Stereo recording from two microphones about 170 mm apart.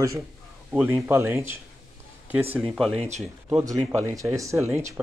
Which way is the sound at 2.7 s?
Centre (ahead or behind).